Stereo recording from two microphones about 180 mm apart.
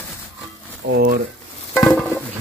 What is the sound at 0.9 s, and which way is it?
Speech, 60° right (ahead or behind).